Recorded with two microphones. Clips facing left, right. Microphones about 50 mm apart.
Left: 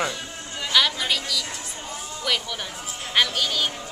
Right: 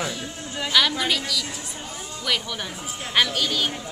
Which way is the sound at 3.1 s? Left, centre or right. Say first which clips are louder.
Even; centre.